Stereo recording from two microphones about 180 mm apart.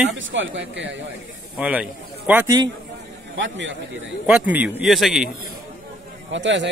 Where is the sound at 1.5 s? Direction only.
5° right (ahead or behind).